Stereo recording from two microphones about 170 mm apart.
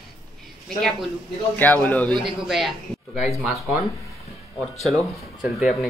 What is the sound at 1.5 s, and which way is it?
Speech, 10° left (ahead or behind).